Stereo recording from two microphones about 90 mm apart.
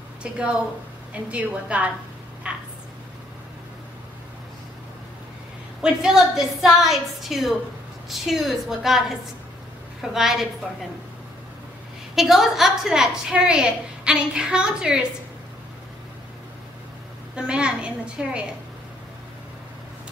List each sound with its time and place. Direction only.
0.2 s a woman's voice: 10° right (ahead or behind)
2.4 s a sound: 15° right (ahead or behind)
5.8 s a woman's voice: 5° right (ahead or behind)
10.1 s a woman's voice: 5° right (ahead or behind)
12.2 s a woman's voice: 5° right (ahead or behind)
17.4 s a woman's voice: 10° right (ahead or behind)